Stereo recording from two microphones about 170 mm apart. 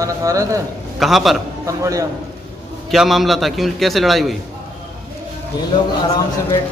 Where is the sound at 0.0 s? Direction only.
20° right (ahead or behind).